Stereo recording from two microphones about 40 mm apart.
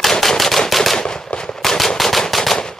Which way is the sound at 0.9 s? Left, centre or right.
Centre.